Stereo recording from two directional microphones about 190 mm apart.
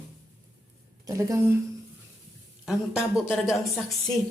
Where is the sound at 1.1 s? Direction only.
15° right (ahead or behind).